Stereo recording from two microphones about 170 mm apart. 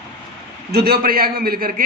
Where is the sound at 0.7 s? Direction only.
65° right (ahead or behind).